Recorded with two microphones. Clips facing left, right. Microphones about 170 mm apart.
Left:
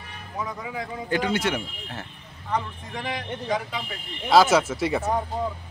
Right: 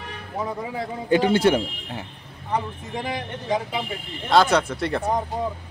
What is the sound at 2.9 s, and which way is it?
Speech, 25° right (ahead or behind).